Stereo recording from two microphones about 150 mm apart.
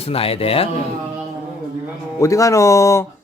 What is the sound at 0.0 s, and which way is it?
Speech, 40° left (ahead or behind).